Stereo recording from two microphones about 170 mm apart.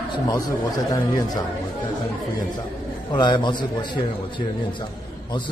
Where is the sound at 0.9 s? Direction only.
25° left (ahead or behind).